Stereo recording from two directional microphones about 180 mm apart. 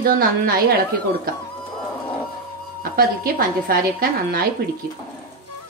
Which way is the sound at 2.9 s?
55° right (ahead or behind).